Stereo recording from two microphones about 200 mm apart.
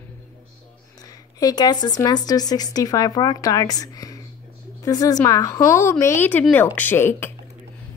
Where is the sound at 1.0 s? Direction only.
20° left (ahead or behind).